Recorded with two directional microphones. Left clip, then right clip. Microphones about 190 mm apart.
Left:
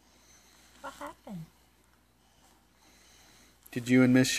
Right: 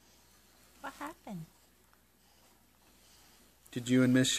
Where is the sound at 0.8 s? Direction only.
30° right (ahead or behind).